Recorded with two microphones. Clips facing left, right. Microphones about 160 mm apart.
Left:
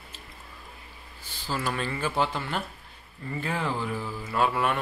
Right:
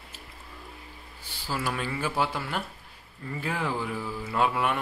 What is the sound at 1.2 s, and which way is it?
Speech, 10° right (ahead or behind).